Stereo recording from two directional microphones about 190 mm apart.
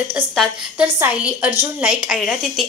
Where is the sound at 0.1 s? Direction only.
5° right (ahead or behind).